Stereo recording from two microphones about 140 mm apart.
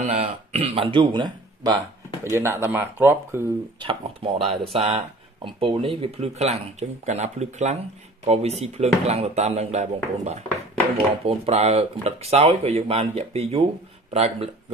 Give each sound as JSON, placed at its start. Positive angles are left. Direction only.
{"t": 0.0, "sound": "speech", "side_deg": -50}
{"t": 2.2, "sound": "speech", "side_deg": -20}
{"t": 3.8, "sound": "speech", "side_deg": -45}